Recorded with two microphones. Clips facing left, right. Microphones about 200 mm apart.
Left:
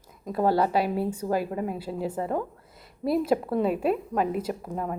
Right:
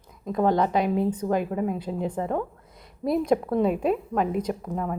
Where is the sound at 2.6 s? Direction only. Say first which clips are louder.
Right 1 dB; 5° left (ahead or behind).